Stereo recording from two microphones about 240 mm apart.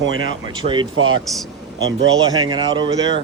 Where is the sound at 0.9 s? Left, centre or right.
Right.